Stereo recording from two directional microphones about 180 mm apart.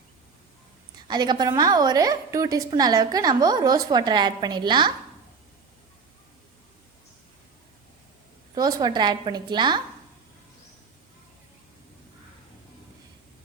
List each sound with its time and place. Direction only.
0.9 s a woman's voice: 25° right (ahead or behind)
8.5 s a woman's voice: 20° right (ahead or behind)